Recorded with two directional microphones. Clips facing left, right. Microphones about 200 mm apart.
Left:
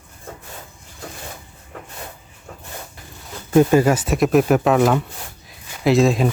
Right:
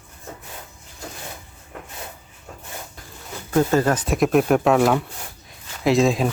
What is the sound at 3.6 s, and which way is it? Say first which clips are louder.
Speech: left 4 dB; 10° left (ahead or behind).